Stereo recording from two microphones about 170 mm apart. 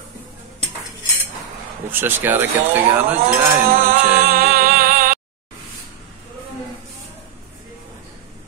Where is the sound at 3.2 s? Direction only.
60° right (ahead or behind).